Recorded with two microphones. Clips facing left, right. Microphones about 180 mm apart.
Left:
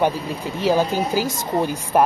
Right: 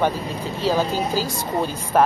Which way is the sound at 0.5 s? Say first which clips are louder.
Left 2 dB; 15° left (ahead or behind).